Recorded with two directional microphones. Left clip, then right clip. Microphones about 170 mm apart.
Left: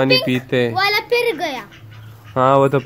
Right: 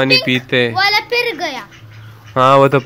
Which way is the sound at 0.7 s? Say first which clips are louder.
Right 2 dB; 55° left (ahead or behind).